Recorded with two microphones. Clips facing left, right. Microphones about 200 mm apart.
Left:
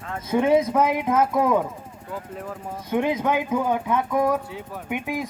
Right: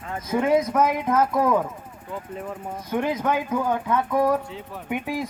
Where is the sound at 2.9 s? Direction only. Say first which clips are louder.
Left 2 dB; 20° left (ahead or behind).